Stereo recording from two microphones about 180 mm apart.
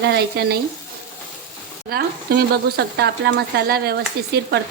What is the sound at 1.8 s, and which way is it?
Speech, 60° right (ahead or behind).